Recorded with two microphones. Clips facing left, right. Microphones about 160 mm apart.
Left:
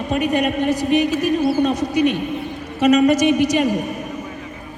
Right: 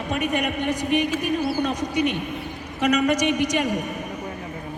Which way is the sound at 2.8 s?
25° left (ahead or behind).